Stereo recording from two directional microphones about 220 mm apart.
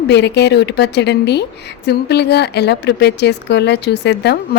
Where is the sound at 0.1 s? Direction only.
50° left (ahead or behind).